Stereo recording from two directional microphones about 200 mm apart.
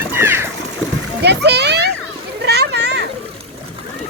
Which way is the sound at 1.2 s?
55° right (ahead or behind).